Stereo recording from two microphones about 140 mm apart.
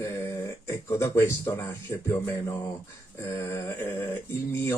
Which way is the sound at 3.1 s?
20° left (ahead or behind).